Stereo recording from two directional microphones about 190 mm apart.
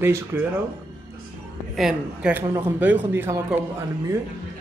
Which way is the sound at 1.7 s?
5° right (ahead or behind).